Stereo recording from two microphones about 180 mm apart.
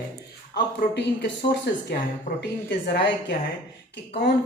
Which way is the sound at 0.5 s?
65° left (ahead or behind).